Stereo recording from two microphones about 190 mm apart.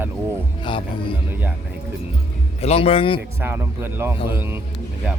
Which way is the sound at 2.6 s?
30° left (ahead or behind).